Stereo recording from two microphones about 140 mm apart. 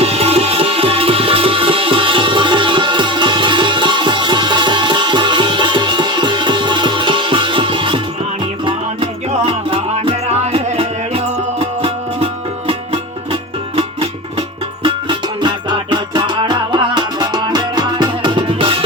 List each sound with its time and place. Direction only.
0.0 s music: 45° right (ahead or behind)
9.5 s music: 40° right (ahead or behind)